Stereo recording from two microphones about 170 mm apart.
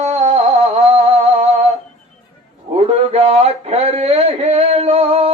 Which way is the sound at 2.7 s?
35° right (ahead or behind).